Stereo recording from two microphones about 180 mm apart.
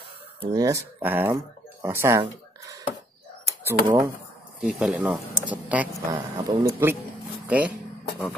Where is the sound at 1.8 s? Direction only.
15° right (ahead or behind).